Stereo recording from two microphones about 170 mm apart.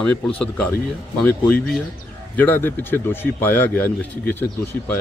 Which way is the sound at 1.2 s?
5° left (ahead or behind).